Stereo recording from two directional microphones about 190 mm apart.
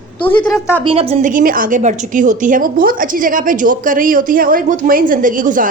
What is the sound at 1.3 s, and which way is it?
A woman's voice, 45° right (ahead or behind).